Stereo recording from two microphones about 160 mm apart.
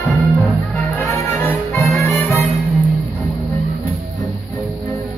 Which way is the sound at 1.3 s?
15° left (ahead or behind).